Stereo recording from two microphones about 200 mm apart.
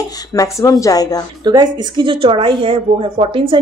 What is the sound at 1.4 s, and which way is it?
A woman's voice, 20° right (ahead or behind).